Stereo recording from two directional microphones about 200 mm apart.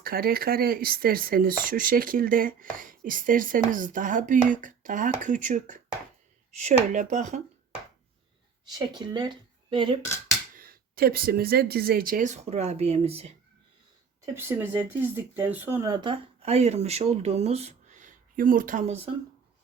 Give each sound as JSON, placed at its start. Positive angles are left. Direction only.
{"t": 0.0, "sound": "speech", "side_deg": -50}
{"t": 8.6, "sound": "speech", "side_deg": -20}
{"t": 10.6, "sound": "speech", "side_deg": -50}
{"t": 14.3, "sound": "speech", "side_deg": -10}